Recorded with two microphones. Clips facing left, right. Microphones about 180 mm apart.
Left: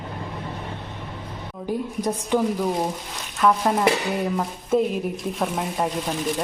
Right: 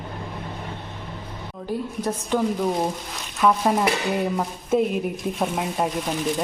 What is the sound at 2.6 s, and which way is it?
Speech, centre (ahead or behind).